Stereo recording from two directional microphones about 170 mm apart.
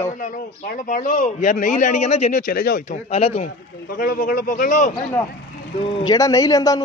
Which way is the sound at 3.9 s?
60° left (ahead or behind).